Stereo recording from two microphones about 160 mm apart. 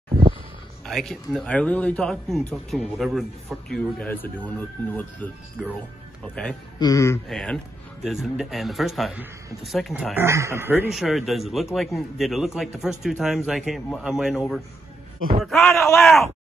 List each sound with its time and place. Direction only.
0.8 s a man's voice: centre (ahead or behind)
6.8 s speech: 20° left (ahead or behind)
7.2 s a man's voice: centre (ahead or behind)
10.1 s speech: 15° right (ahead or behind)
10.9 s a man's voice: centre (ahead or behind)
15.7 s speech: 15° left (ahead or behind)
16.0 s a man's voice: centre (ahead or behind)